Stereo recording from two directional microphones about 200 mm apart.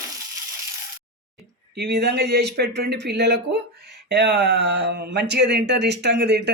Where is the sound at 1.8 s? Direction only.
55° right (ahead or behind).